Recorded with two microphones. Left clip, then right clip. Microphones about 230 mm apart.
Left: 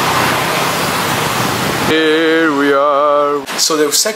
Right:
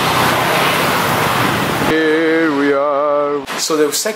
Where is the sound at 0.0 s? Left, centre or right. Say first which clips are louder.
Even; centre.